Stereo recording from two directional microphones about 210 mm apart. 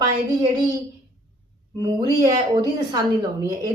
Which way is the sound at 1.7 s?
20° right (ahead or behind).